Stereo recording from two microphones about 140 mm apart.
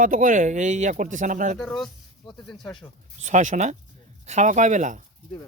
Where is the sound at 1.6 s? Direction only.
5° left (ahead or behind).